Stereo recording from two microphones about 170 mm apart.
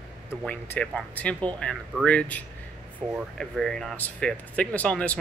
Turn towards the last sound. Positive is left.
turn(degrees=5)  # may be behind; listen again after turning